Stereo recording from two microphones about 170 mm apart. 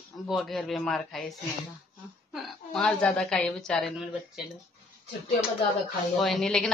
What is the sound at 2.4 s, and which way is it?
Speech, 5° left (ahead or behind).